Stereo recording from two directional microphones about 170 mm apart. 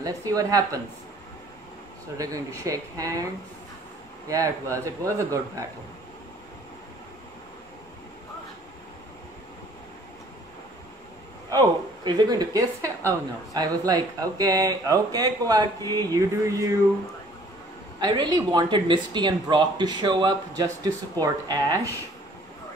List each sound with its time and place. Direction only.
0.0 s speech: 20° right (ahead or behind)
2.1 s speech: 20° right (ahead or behind)
4.3 s speech: 20° right (ahead or behind)
11.5 s speech: 25° right (ahead or behind)
18.0 s speech: 25° right (ahead or behind)